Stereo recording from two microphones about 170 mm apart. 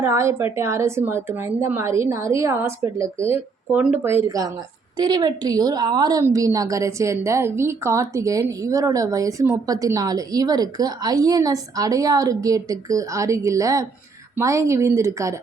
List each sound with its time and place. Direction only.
0.0 s a woman's voice: 15° right (ahead or behind)